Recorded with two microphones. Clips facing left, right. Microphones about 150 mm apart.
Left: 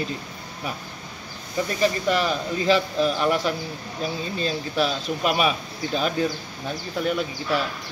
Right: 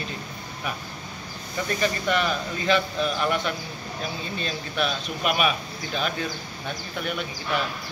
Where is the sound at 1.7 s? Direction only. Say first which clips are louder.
Left 3 dB; 35° left (ahead or behind).